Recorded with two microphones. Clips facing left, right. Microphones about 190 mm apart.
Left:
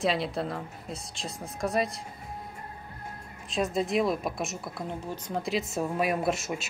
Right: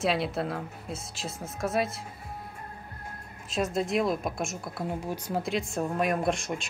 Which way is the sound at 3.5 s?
Centre (ahead or behind).